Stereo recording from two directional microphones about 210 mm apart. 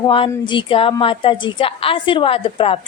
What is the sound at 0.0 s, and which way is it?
A woman's voice, 25° left (ahead or behind).